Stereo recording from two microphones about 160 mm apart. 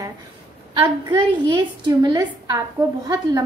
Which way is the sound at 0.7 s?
30° right (ahead or behind).